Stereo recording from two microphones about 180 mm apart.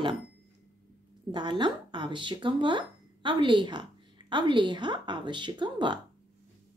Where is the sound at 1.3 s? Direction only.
25° right (ahead or behind).